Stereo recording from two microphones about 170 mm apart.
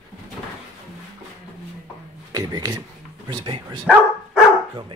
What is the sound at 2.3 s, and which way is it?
Speech, 20° right (ahead or behind).